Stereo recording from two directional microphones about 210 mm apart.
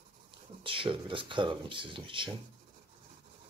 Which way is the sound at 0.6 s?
25° right (ahead or behind).